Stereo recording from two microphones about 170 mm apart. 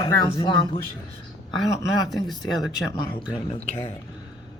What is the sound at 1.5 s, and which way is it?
A woman's voice, 25° left (ahead or behind).